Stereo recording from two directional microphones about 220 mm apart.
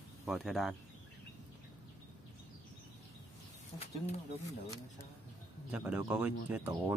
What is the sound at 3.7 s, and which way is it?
Speech, 25° left (ahead or behind).